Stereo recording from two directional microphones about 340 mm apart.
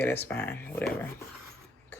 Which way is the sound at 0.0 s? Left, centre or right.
Centre.